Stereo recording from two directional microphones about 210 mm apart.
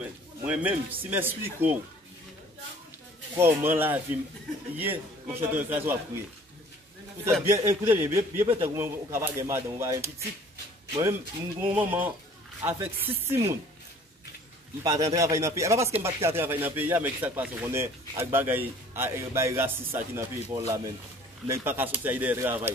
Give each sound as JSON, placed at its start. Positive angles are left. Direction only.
{"t": 0.0, "sound": "speech", "side_deg": -5}
{"t": 3.3, "sound": "speech", "side_deg": -10}
{"t": 7.4, "sound": "speech", "side_deg": -15}
{"t": 11.7, "sound": "speech", "side_deg": -10}
{"t": 14.8, "sound": "a man's voice", "side_deg": -20}